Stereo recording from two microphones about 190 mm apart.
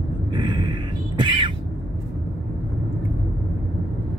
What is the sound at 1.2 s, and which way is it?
Squawk, 25° right (ahead or behind).